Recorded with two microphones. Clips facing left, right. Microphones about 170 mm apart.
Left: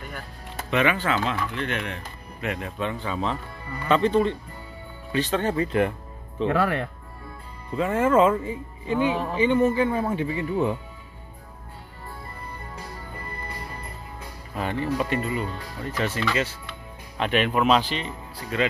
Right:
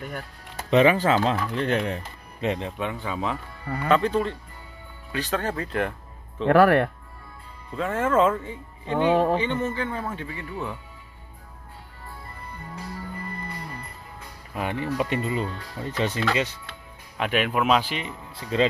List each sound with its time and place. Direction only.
0.7 s speech: 30° right (ahead or behind)
2.8 s speech: 10° right (ahead or behind)
6.4 s speech: 70° right (ahead or behind)
7.7 s speech: 5° left (ahead or behind)
8.9 s speech: 60° right (ahead or behind)
9.4 s speech: 10° left (ahead or behind)
14.5 s speech: 15° right (ahead or behind)
17.2 s speech: 5° right (ahead or behind)
18.3 s speech: 25° right (ahead or behind)